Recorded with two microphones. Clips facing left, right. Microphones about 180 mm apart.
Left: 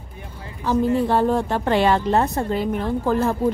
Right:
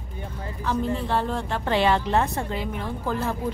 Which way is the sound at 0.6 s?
40° left (ahead or behind).